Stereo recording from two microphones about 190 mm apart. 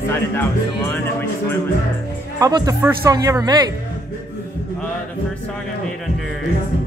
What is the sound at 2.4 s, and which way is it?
A man's voice, 20° right (ahead or behind).